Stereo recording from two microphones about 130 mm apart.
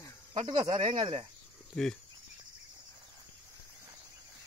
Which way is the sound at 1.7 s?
10° left (ahead or behind).